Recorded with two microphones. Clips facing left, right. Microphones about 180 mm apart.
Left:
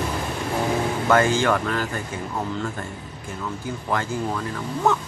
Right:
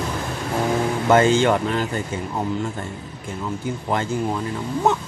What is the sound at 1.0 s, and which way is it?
Speech, 20° right (ahead or behind).